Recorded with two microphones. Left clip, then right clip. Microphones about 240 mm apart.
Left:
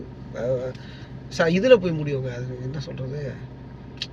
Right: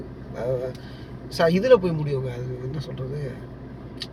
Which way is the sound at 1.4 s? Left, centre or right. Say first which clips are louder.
Left 1 dB; centre.